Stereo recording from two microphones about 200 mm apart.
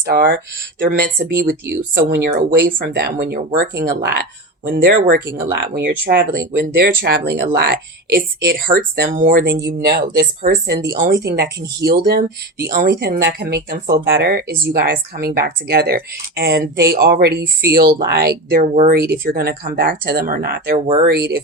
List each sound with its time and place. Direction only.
0.1 s speech: 50° right (ahead or behind)
18.7 s speech: 40° right (ahead or behind)
18.9 s speech: 50° right (ahead or behind)
20.7 s speech: 30° right (ahead or behind)